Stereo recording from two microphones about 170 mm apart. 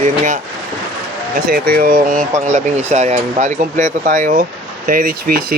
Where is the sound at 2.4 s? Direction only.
40° right (ahead or behind); by 5.6 s 60° right (ahead or behind).